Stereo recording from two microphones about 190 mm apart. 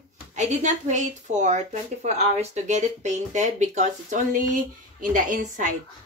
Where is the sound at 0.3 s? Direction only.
40° right (ahead or behind).